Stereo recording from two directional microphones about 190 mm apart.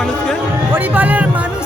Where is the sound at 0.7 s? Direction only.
10° right (ahead or behind).